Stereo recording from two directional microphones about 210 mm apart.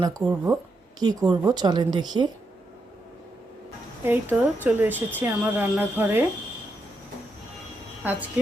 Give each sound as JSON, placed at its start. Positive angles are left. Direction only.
{"t": 0.5, "sound": "a woman's voice", "side_deg": -20}
{"t": 4.0, "sound": "speech", "side_deg": -10}
{"t": 8.0, "sound": "speech", "side_deg": -10}